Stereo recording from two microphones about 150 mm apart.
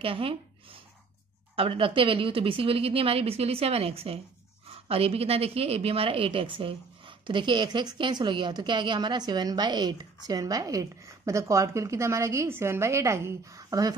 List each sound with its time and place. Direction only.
0.0 s a woman's voice: 40° right (ahead or behind)
1.6 s a woman's voice: 35° right (ahead or behind)